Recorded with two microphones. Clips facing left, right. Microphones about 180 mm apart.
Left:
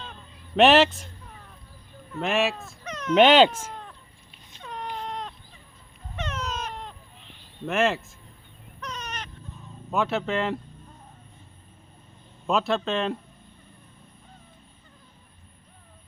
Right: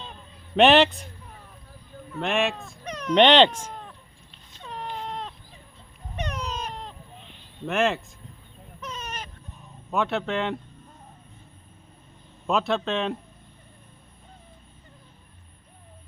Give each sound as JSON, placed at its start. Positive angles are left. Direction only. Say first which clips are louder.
{"t": 0.5, "sound": "a man's voice", "louder": "even", "side_deg": 0}
{"t": 2.1, "sound": "a man's voice", "louder": "even", "side_deg": 0}
{"t": 2.8, "sound": "dog", "louder": "left 1 dB", "side_deg": -10}
{"t": 3.2, "sound": "speech", "louder": "left 1 dB", "side_deg": 5}
{"t": 4.7, "sound": "baby cry", "louder": "even", "side_deg": 0}
{"t": 6.1, "sound": "a sound", "louder": "right 1 dB", "side_deg": -15}
{"t": 7.7, "sound": "a man's voice", "louder": "even", "side_deg": 0}
{"t": 8.8, "sound": "a sound", "louder": "even", "side_deg": -5}
{"t": 9.9, "sound": "a man's voice", "louder": "even", "side_deg": 0}
{"t": 12.5, "sound": "a man's voice", "louder": "even", "side_deg": 0}